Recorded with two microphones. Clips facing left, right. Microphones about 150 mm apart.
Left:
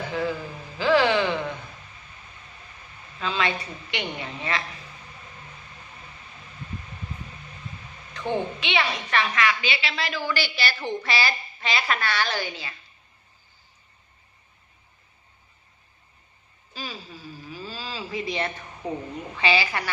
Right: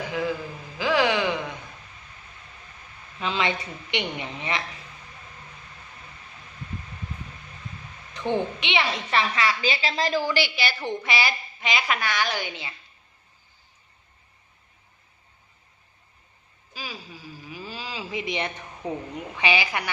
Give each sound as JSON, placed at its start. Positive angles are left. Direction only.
{"t": 0.1, "sound": "a man's voice", "side_deg": -10}
{"t": 3.2, "sound": "a woman's voice", "side_deg": -20}
{"t": 8.3, "sound": "a woman's voice", "side_deg": -20}
{"t": 16.7, "sound": "a sound", "side_deg": -10}
{"t": 19.1, "sound": "a woman's voice", "side_deg": -15}